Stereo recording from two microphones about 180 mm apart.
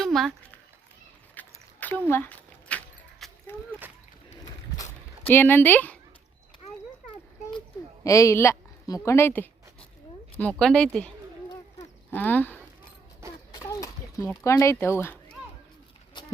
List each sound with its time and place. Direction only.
0.0 s a sound: centre (ahead or behind)
1.4 s a sound: 10° left (ahead or behind)
5.3 s speech: 10° left (ahead or behind)
8.0 s a woman's voice: 15° left (ahead or behind)
10.6 s speech: 5° left (ahead or behind)
12.1 s speech: 10° left (ahead or behind)
13.6 s a sound: 20° left (ahead or behind)
14.4 s speech: 15° left (ahead or behind)
16.1 s livestock: 25° left (ahead or behind)